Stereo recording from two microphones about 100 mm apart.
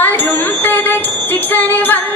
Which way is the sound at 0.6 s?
20° left (ahead or behind).